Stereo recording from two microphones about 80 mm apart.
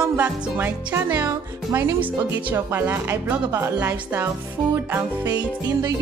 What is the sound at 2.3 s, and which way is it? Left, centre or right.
Speech, right.